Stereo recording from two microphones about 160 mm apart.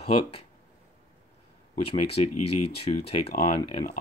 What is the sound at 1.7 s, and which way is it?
Speech, 40° left (ahead or behind).